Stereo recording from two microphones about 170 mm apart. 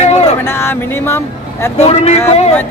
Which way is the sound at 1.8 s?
40° left (ahead or behind).